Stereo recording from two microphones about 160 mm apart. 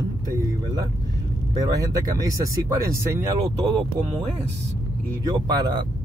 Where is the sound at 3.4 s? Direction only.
40° right (ahead or behind).